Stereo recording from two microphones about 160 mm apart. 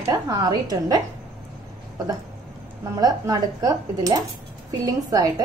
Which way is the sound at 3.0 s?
25° right (ahead or behind).